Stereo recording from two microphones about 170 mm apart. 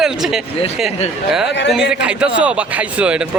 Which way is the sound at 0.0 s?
5° right (ahead or behind).